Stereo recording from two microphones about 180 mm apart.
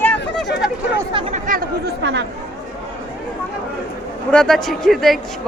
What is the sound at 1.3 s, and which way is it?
Chatter, 50° right (ahead or behind).